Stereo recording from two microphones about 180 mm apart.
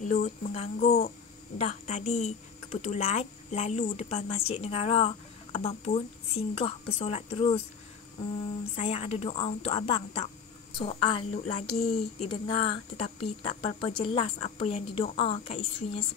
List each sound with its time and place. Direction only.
0.0 s speech: 45° left (ahead or behind)
8.7 s speech: 35° left (ahead or behind)
13.7 s speech: 30° left (ahead or behind)